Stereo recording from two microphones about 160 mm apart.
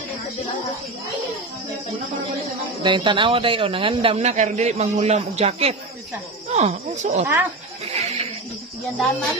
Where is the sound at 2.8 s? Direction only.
30° right (ahead or behind).